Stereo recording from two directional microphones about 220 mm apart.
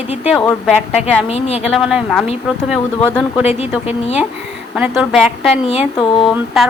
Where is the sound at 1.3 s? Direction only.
30° left (ahead or behind).